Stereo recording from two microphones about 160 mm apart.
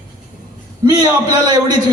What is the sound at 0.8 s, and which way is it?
Speech, 25° right (ahead or behind).